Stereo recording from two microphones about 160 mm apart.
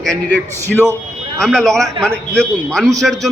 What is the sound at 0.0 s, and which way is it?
A man's voice, 5° left (ahead or behind).